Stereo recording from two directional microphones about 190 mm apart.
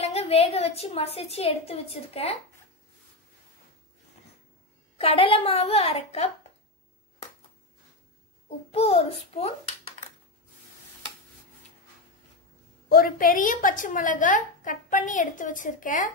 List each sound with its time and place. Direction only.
0.0 s a woman's voice: 30° left (ahead or behind)
4.9 s a woman's voice: 30° left (ahead or behind)
8.5 s a woman's voice: 35° left (ahead or behind)
12.8 s a woman's voice: 50° left (ahead or behind)